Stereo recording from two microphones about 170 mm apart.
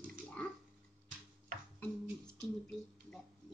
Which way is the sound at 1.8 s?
5° left (ahead or behind).